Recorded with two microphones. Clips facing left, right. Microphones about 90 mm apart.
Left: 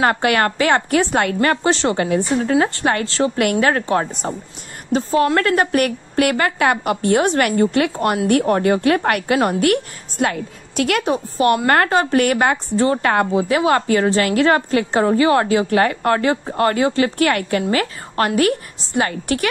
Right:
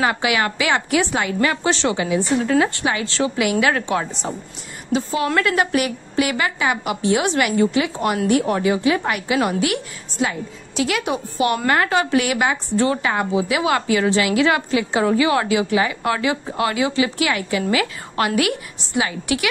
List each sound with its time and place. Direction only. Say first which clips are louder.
0.0 s a woman's voice: left 3 dB; 45° left (ahead or behind)
1.6 s a woman's voice: left 2 dB; 40° left (ahead or behind)
3.6 s a woman's voice: left 2 dB; 35° left (ahead or behind)
13.0 s speech: left 4 dB; 55° left (ahead or behind)
13.4 s a woman's voice: left 3 dB; 40° left (ahead or behind)